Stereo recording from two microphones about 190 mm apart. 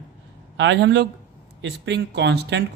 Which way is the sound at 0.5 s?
70° right (ahead or behind).